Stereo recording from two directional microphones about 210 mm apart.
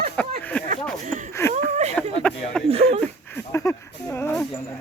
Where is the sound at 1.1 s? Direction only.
35° right (ahead or behind).